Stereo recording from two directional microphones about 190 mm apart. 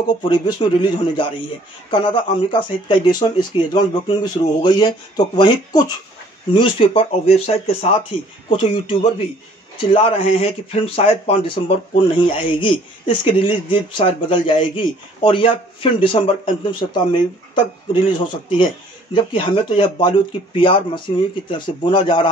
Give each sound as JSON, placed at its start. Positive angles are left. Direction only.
{"t": 0.2, "sound": "speech", "side_deg": 25}